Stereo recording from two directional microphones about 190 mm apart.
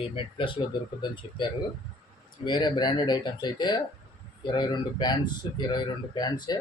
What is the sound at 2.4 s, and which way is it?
Speech, 25° left (ahead or behind).